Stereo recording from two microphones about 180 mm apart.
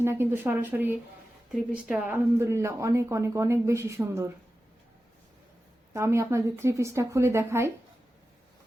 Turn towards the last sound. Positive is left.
turn(degrees=-15)  # may be behind; listen again after turning